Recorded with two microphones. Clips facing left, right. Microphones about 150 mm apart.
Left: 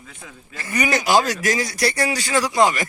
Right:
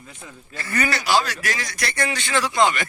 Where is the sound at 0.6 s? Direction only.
15° left (ahead or behind).